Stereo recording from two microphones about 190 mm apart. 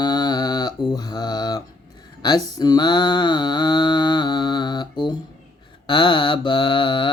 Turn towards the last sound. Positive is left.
turn(degrees=25)  # may be behind; listen again after turning